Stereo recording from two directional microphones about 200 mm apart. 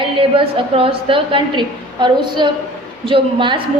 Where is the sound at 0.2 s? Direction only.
25° right (ahead or behind).